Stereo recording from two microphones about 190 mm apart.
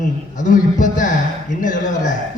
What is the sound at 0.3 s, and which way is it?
Speech, 40° left (ahead or behind).